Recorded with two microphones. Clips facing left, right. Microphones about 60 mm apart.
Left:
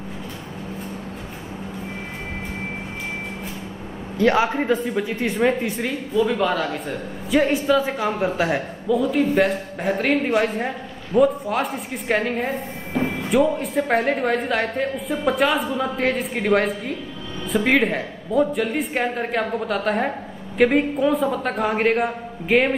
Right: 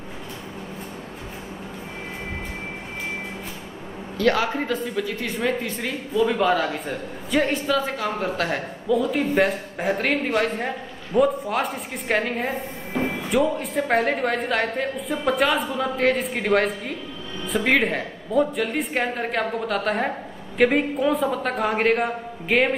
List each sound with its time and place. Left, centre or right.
4.2 s a woman's voice: centre
6.2 s a man's voice: centre